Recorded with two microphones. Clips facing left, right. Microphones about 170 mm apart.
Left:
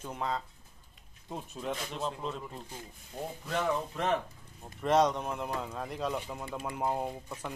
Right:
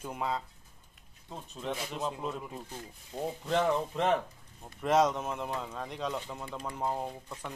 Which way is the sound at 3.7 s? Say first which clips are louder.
Right 2 dB; 20° right (ahead or behind).